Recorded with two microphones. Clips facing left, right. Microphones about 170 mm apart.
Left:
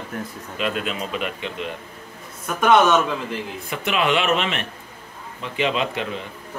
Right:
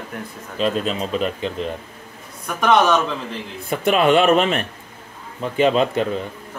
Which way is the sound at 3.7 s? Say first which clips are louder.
Right 6 dB; 45° right (ahead or behind).